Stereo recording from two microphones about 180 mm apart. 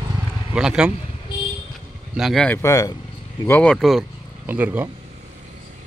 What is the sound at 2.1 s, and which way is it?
Speech, centre (ahead or behind).